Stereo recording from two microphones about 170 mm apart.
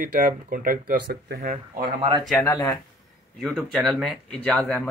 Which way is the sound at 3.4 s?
Centre (ahead or behind).